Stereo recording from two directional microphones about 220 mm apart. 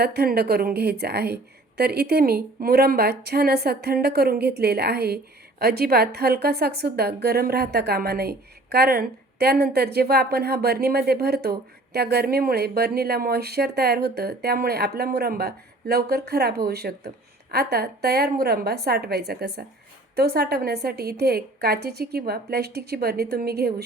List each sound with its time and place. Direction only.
0.0 s a woman's voice: 45° right (ahead or behind)